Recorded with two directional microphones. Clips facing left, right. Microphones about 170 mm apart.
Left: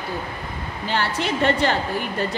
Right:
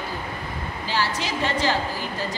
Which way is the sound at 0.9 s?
60° left (ahead or behind).